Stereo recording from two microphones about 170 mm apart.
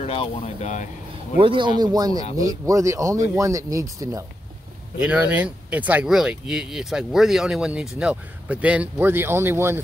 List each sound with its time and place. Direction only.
0.0 s speech: 35° left (ahead or behind)
1.4 s speech: 30° right (ahead or behind)
5.0 s speech: 5° right (ahead or behind)